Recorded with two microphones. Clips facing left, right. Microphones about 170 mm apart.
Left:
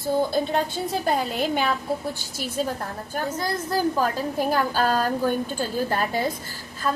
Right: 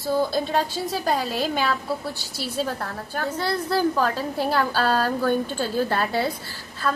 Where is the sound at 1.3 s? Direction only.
20° left (ahead or behind).